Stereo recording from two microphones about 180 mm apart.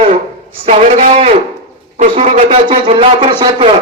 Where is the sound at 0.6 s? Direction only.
40° right (ahead or behind).